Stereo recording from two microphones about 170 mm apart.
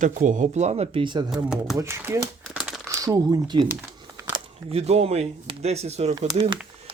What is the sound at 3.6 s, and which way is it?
Crumpling, 15° right (ahead or behind).